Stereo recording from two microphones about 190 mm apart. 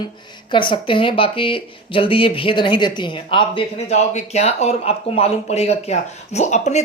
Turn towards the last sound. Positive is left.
turn(degrees=40)  # may be behind; listen again after turning